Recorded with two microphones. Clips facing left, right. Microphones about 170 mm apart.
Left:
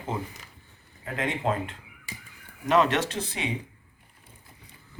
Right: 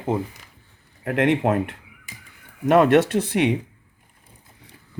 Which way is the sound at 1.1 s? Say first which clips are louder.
Right 9 dB; 75° right (ahead or behind).